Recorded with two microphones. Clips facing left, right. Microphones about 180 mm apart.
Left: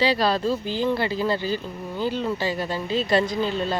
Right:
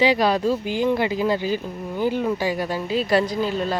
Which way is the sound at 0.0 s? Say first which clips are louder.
Right 3 dB; 15° right (ahead or behind).